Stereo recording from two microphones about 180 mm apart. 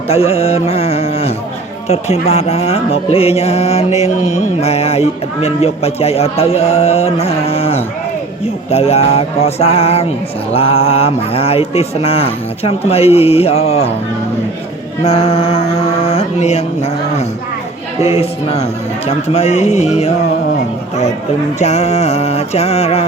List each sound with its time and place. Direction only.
0.1 s music: 35° left (ahead or behind)
15.0 s music: 35° left (ahead or behind)
21.6 s music: 35° left (ahead or behind)